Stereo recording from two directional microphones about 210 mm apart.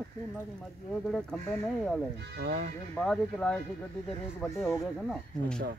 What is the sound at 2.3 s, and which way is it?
Speech, 45° right (ahead or behind).